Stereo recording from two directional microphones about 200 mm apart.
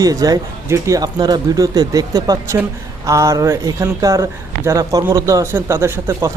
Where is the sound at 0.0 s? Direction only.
20° right (ahead or behind).